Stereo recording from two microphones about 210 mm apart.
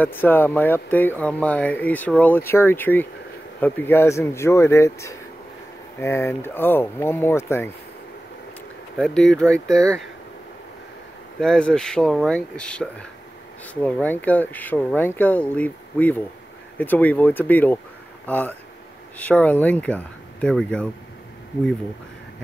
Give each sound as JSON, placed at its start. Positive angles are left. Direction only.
{"t": 0.0, "sound": "speech", "side_deg": 10}
{"t": 8.9, "sound": "speech", "side_deg": 5}
{"t": 11.3, "sound": "speech", "side_deg": 5}